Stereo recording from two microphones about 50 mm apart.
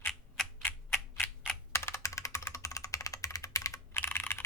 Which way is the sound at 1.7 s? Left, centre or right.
Left.